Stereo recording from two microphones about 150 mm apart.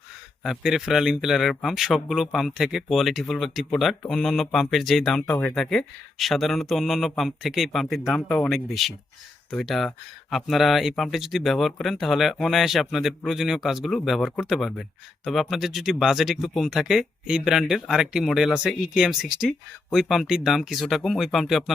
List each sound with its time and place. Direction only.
0.4 s speech: centre (ahead or behind)
5.2 s speech: 10° left (ahead or behind)